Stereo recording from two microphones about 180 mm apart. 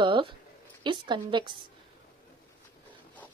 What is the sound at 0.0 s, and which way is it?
A woman's voice, 25° right (ahead or behind).